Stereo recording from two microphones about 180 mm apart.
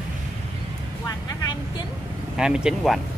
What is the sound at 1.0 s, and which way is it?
Vehicle, 20° left (ahead or behind).